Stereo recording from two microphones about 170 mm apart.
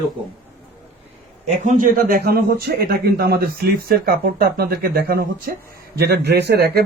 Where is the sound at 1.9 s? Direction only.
60° right (ahead or behind).